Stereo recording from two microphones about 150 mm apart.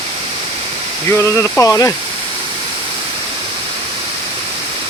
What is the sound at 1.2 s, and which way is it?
Speech, 20° left (ahead or behind).